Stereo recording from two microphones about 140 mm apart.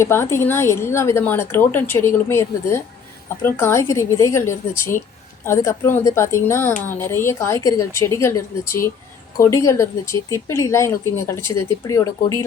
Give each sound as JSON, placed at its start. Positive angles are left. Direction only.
{"t": 0.0, "sound": "a woman's voice", "side_deg": 20}